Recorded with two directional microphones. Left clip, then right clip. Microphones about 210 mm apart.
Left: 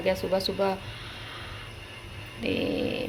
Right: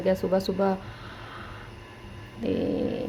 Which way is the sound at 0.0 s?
30° right (ahead or behind).